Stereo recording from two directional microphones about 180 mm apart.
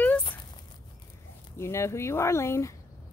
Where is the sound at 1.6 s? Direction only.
15° left (ahead or behind).